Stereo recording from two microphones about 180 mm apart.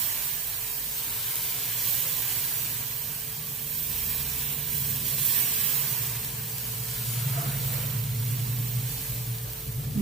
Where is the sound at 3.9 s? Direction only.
Centre (ahead or behind).